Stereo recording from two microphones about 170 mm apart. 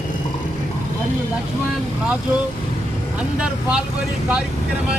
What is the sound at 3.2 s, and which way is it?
Speech, 5° right (ahead or behind).